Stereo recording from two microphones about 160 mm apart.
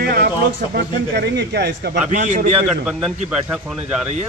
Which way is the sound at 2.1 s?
50° right (ahead or behind).